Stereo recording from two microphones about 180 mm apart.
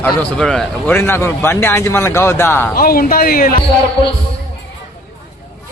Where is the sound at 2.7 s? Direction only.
55° left (ahead or behind).